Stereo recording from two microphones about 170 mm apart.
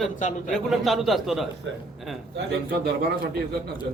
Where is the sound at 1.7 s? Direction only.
90° right.